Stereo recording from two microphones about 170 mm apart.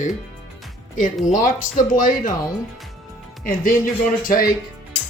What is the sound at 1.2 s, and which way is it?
Speech, 50° left (ahead or behind).